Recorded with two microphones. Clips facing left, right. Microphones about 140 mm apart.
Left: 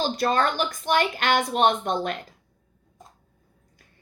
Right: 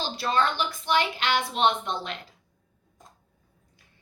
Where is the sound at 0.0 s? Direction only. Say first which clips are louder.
Left 3 dB; 45° left (ahead or behind).